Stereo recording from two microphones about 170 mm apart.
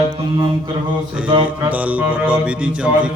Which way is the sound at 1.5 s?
10° right (ahead or behind).